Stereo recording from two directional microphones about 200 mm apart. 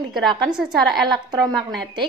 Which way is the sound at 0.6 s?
Centre (ahead or behind).